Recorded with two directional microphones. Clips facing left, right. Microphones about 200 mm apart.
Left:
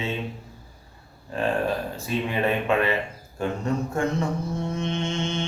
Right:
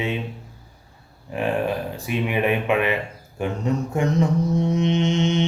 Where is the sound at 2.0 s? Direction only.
15° right (ahead or behind).